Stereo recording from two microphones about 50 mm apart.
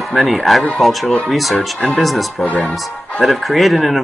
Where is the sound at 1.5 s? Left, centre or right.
Centre.